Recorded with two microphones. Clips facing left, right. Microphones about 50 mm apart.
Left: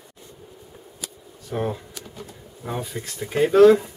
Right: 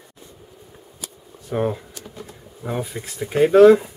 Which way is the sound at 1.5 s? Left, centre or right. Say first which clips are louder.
Right 4 dB; centre.